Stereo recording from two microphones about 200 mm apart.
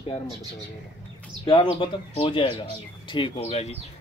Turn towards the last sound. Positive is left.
turn(degrees=30)  # may be behind; listen again after turning